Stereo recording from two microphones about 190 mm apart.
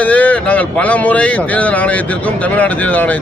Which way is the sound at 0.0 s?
5° left (ahead or behind).